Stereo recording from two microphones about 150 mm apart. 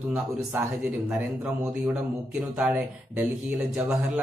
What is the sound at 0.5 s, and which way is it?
Speech, 10° right (ahead or behind).